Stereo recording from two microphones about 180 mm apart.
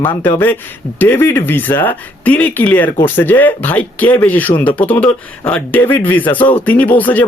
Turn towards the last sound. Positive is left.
turn(degrees=10)  # may be behind; listen again after turning